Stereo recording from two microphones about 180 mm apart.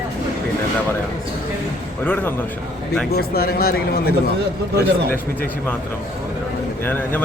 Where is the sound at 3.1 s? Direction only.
60° left (ahead or behind).